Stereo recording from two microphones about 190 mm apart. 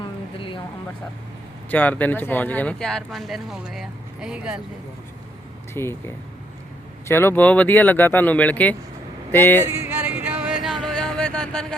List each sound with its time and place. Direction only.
0.0 s a sound: 25° left (ahead or behind)
1.7 s speech: 10° left (ahead or behind)
5.7 s speech: 15° left (ahead or behind)
9.6 s music: 15° right (ahead or behind); by 11.8 s 5° left (ahead or behind)